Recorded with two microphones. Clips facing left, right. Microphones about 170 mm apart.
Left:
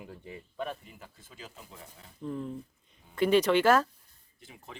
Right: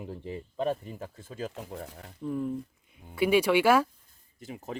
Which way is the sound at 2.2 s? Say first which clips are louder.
Right 5 dB; 5° right (ahead or behind).